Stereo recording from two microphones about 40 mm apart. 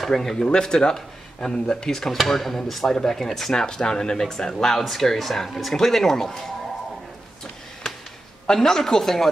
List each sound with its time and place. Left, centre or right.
0.0 s speech: centre
3.5 s speech: centre
4.7 s speech: centre
7.8 s a sound: centre
8.5 s speech: centre